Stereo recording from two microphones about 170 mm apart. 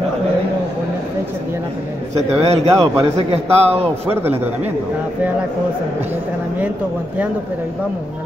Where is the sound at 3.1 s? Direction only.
35° right (ahead or behind).